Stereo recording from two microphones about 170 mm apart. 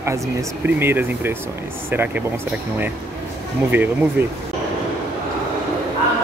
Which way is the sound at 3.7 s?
10° right (ahead or behind).